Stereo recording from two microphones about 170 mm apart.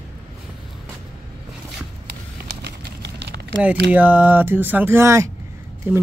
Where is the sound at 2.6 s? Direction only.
90° right.